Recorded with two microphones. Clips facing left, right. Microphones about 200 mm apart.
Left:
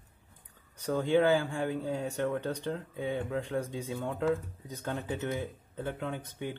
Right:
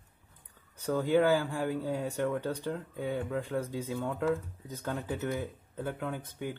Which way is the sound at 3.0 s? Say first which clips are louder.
Even; 5° right (ahead or behind).